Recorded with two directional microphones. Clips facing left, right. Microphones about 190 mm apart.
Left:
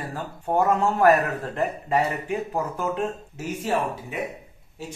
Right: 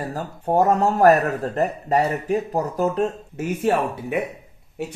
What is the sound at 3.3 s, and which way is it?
Speech, 55° right (ahead or behind).